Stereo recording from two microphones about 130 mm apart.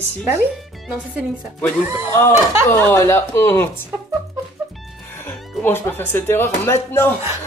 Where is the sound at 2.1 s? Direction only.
20° left (ahead or behind).